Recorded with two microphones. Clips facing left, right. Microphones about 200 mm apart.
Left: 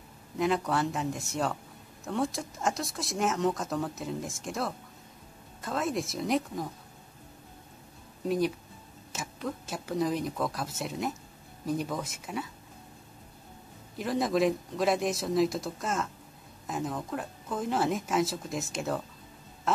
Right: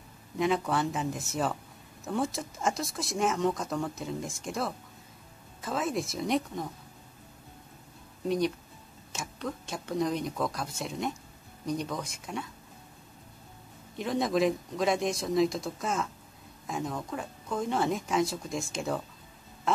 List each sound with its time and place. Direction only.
0.4 s speech: centre (ahead or behind)
8.3 s speech: centre (ahead or behind)
13.9 s speech: centre (ahead or behind)